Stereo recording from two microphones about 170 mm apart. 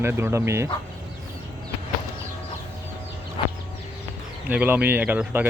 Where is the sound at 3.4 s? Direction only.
30° left (ahead or behind).